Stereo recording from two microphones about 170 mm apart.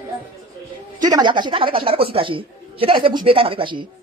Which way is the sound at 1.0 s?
25° right (ahead or behind).